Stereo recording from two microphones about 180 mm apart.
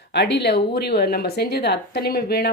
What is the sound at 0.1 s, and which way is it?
Speech, 70° left (ahead or behind).